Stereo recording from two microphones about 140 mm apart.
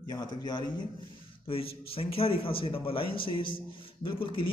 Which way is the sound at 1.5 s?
40° left (ahead or behind).